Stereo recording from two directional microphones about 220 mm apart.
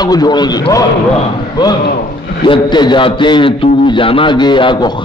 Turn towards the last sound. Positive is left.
turn(degrees=20)  # may be behind; listen again after turning